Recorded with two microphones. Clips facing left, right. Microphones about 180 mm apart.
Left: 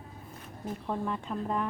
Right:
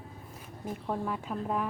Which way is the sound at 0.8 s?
5° right (ahead or behind).